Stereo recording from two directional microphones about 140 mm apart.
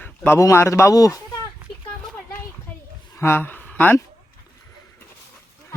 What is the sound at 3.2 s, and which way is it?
Speech, 15° left (ahead or behind).